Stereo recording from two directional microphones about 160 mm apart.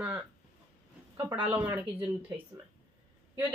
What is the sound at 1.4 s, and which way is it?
Speech, 10° right (ahead or behind).